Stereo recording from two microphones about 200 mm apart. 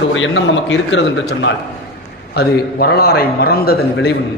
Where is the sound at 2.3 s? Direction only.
50° left (ahead or behind).